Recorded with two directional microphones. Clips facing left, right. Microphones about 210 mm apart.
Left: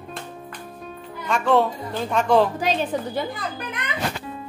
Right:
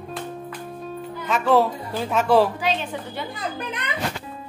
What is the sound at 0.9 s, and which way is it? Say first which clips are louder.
Speech: even; 5° right (ahead or behind).